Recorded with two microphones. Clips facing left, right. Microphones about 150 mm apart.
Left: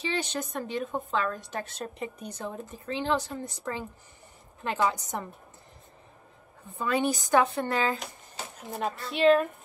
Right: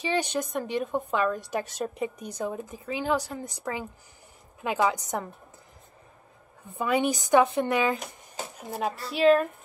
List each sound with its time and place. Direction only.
0.0 s a woman's voice: 15° right (ahead or behind)
6.8 s a woman's voice: 15° right (ahead or behind)
8.6 s a woman's voice: 5° right (ahead or behind)